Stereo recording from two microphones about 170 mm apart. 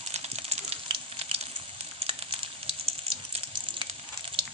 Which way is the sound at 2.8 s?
35° right (ahead or behind).